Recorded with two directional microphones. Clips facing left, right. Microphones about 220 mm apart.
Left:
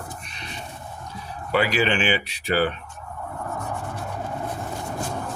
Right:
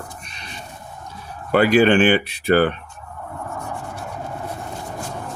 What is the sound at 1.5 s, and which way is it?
Speech, 50° right (ahead or behind).